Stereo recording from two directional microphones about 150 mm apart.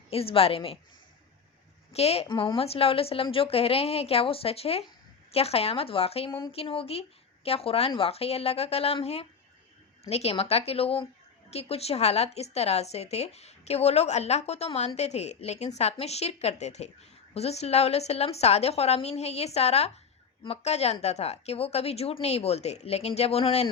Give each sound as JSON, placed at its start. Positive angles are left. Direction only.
{"t": 0.1, "sound": "a woman's voice", "side_deg": 40}
{"t": 1.9, "sound": "a woman's voice", "side_deg": 45}
{"t": 2.2, "sound": "a woman's voice", "side_deg": 30}